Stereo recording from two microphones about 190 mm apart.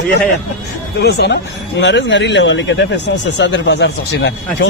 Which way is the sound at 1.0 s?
60° left (ahead or behind).